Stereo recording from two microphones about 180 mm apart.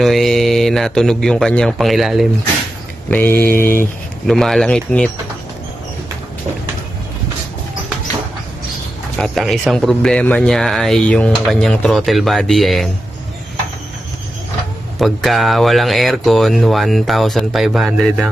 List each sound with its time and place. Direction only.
0.0 s speech: centre (ahead or behind)
3.1 s mantra: 10° left (ahead or behind)
3.6 s speech: 50° left (ahead or behind)
4.3 s speech: centre (ahead or behind)
9.2 s speech: centre (ahead or behind)
15.0 s speech: centre (ahead or behind)